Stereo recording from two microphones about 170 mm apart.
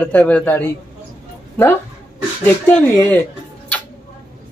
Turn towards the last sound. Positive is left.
turn(degrees=10)  # may be behind; listen again after turning